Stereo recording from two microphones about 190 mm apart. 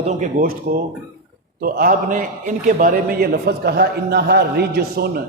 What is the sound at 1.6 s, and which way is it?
A man's voice, 50° right (ahead or behind).